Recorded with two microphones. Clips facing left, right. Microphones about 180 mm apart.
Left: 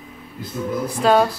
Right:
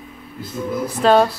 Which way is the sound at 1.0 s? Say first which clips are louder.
Right 2 dB; 5° left (ahead or behind).